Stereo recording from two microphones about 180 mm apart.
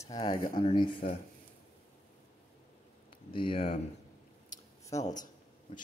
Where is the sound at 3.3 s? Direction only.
30° left (ahead or behind).